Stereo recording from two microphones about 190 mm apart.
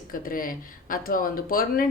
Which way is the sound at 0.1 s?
45° left (ahead or behind).